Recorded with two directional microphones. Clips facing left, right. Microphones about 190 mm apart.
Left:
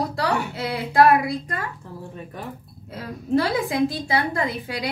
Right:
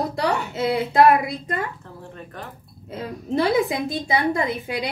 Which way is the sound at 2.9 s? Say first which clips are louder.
Left 3 dB; 20° right (ahead or behind).